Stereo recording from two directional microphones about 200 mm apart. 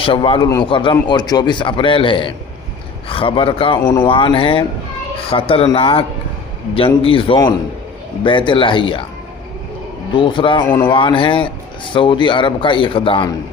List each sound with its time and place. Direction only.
0.0 s a man's voice: 25° left (ahead or behind)
10.1 s a man's voice: 25° left (ahead or behind)